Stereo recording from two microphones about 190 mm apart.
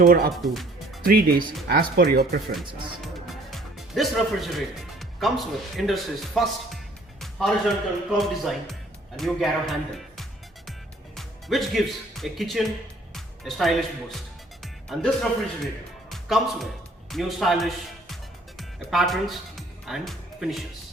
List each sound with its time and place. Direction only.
0.0 s speech: 50° right (ahead or behind)
0.4 s a man's voice: centre (ahead or behind)
1.0 s speech: 50° right (ahead or behind)
3.5 s speech: centre (ahead or behind)
7.2 s music: centre (ahead or behind)
8.2 s a man's voice: centre (ahead or behind)
10.7 s music: centre (ahead or behind)
13.1 s a man's voice: centre (ahead or behind)
17.1 s music: centre (ahead or behind)